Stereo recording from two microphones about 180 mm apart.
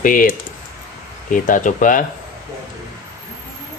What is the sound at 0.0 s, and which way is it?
Speech, 50° left (ahead or behind).